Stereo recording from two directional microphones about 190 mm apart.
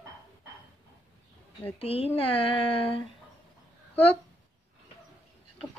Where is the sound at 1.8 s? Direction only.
30° left (ahead or behind).